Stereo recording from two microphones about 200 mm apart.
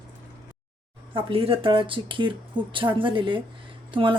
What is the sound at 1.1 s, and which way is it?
Speech, 25° right (ahead or behind).